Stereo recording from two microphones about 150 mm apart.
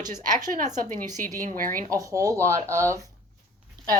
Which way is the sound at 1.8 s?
20° right (ahead or behind).